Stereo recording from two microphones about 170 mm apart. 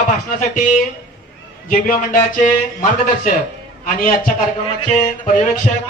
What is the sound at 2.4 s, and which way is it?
Speech, 50° left (ahead or behind).